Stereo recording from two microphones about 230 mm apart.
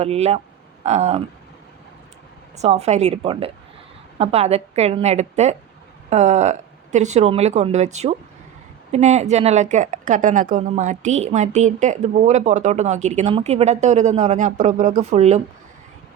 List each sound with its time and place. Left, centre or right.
0.0 s a woman's voice: right
2.6 s a woman's voice: right